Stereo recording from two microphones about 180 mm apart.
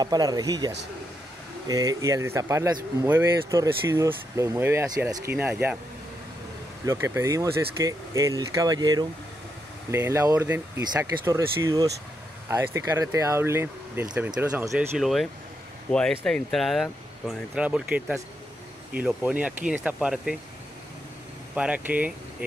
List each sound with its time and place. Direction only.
0.0 s speech: 20° right (ahead or behind)
6.9 s speech: 15° right (ahead or behind)
21.5 s speech: 5° right (ahead or behind)